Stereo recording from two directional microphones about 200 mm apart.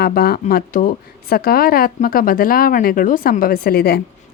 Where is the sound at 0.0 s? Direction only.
50° left (ahead or behind).